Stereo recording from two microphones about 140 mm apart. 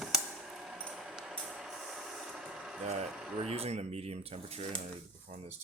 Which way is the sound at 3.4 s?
45° right (ahead or behind).